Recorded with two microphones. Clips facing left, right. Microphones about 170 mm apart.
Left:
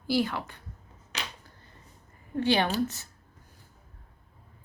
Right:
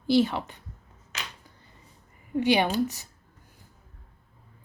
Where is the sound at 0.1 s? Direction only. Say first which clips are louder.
Right 5 dB; 20° right (ahead or behind).